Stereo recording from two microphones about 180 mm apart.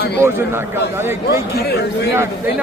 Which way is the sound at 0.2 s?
15° right (ahead or behind).